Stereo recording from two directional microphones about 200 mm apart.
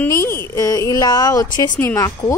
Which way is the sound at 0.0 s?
10° left (ahead or behind).